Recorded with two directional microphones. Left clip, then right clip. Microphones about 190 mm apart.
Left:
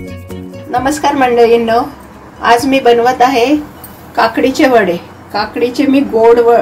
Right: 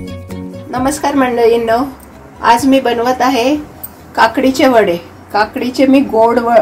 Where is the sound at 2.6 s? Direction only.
25° right (ahead or behind).